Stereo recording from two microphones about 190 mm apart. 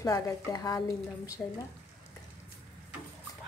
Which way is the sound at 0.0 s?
15° left (ahead or behind).